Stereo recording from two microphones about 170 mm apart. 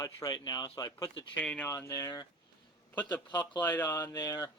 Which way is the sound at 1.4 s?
10° left (ahead or behind).